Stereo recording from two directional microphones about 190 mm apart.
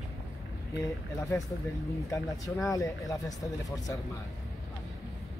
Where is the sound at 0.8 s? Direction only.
15° left (ahead or behind).